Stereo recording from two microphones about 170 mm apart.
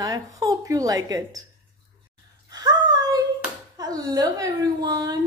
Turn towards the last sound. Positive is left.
turn(degrees=-25)  # may be behind; listen again after turning